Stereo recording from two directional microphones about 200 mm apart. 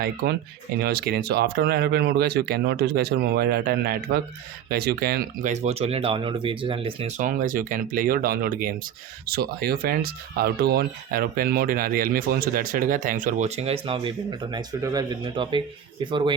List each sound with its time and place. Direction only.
0.8 s speech: 50° right (ahead or behind); by 7.1 s 25° right (ahead or behind)
7.2 s speech: 40° right (ahead or behind); by 16.3 s 25° right (ahead or behind)